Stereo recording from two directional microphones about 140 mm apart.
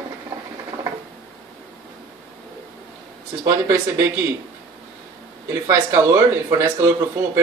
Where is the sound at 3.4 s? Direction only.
20° right (ahead or behind).